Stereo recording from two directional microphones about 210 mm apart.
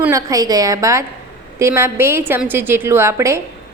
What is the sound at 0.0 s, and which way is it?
A woman's voice, 15° right (ahead or behind).